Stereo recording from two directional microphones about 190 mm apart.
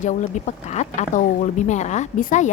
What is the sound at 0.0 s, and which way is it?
Speech, 40° left (ahead or behind).